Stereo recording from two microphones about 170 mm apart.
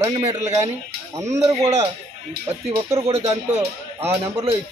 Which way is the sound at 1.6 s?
40° right (ahead or behind).